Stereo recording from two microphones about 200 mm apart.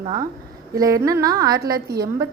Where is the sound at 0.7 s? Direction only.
15° right (ahead or behind).